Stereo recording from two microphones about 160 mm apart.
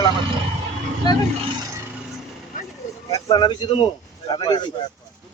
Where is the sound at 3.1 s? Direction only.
25° left (ahead or behind).